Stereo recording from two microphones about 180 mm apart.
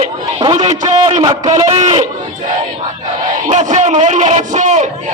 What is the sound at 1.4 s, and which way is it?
Speech, 40° right (ahead or behind).